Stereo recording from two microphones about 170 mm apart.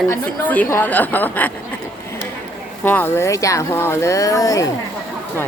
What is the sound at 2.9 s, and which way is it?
Speech, 10° left (ahead or behind).